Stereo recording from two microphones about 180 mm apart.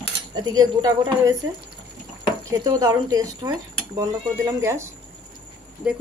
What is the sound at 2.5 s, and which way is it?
Speech, 20° right (ahead or behind).